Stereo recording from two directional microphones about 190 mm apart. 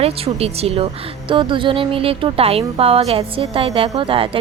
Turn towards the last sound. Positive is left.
turn(degrees=-30)  # may be behind; listen again after turning